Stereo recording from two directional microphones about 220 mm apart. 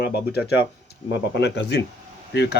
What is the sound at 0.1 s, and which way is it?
Speech, 45° left (ahead or behind).